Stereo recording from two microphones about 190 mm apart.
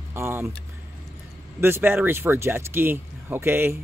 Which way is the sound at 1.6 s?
10° right (ahead or behind).